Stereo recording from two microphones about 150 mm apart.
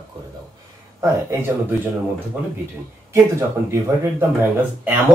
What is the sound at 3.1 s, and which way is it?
Speech, 20° right (ahead or behind).